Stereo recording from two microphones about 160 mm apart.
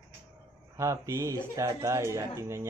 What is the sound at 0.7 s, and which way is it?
A woman's voice, 20° right (ahead or behind).